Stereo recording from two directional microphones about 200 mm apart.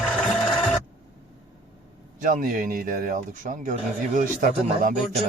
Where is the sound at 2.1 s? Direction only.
40° right (ahead or behind).